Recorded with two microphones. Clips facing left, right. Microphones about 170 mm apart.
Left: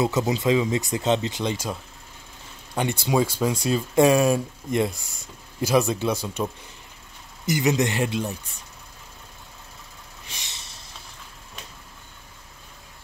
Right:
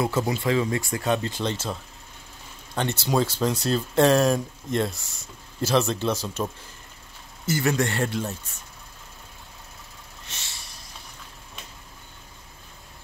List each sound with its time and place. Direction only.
0.0 s speech: 20° left (ahead or behind)
10.2 s vehicle: 15° left (ahead or behind)